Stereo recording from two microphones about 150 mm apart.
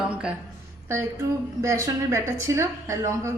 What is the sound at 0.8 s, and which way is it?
A woman's voice, 20° right (ahead or behind).